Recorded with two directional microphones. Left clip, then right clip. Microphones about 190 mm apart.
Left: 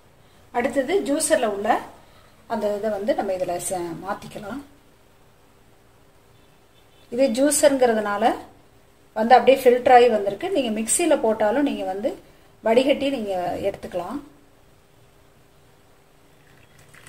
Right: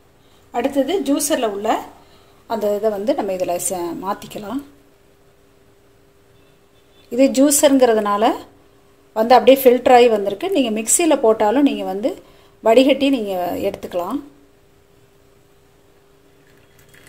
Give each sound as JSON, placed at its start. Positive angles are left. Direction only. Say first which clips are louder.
{"t": 0.5, "sound": "a woman's voice", "louder": "right 3 dB", "side_deg": -30}
{"t": 7.1, "sound": "a woman's voice", "louder": "right 5 dB", "side_deg": -30}